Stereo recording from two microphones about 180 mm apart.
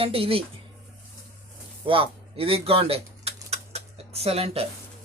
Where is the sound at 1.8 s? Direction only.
30° right (ahead or behind).